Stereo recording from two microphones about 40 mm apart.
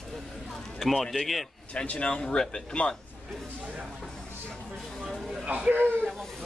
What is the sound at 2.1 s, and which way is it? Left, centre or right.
Speech, centre.